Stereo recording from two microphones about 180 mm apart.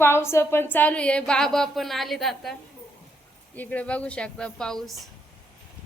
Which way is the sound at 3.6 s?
10° left (ahead or behind).